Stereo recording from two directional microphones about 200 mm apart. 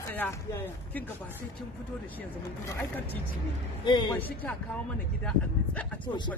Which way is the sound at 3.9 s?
25° left (ahead or behind).